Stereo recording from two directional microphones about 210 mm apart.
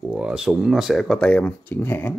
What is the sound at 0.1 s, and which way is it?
Speech, 5° right (ahead or behind).